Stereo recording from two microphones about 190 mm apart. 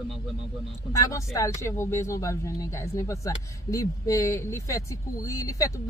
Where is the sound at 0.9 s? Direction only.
15° left (ahead or behind).